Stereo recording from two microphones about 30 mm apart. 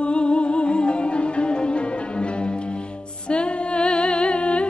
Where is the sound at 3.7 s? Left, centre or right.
Left.